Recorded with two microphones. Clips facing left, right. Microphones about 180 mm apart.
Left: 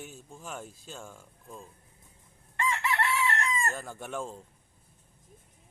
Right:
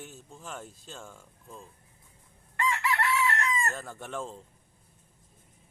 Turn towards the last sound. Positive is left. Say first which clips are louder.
# left 1 dB
turn(degrees=5)  # may be behind; listen again after turning